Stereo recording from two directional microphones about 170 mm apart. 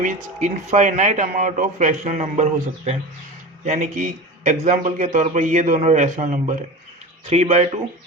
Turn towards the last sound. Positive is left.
turn(degrees=-40)  # may be behind; listen again after turning